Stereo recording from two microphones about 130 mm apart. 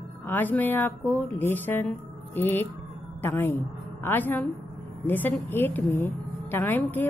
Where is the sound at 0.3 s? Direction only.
15° left (ahead or behind).